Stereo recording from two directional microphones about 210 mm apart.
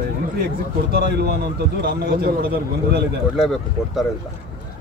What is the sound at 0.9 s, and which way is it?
A man's voice, 50° right (ahead or behind).